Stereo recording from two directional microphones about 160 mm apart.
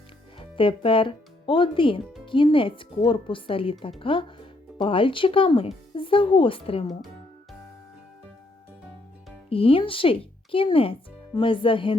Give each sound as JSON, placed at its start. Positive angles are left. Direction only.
{"t": 0.3, "sound": "speech", "side_deg": 35}
{"t": 9.5, "sound": "speech", "side_deg": 35}